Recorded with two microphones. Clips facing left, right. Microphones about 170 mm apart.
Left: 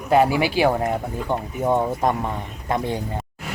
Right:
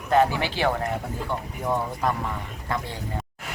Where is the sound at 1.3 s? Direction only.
25° left (ahead or behind).